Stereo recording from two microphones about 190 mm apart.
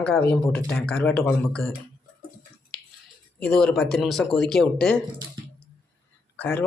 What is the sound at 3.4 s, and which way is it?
Speech, 5° left (ahead or behind).